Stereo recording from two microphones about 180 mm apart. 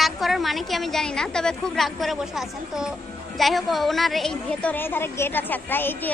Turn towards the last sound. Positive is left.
turn(degrees=10)  # may be behind; listen again after turning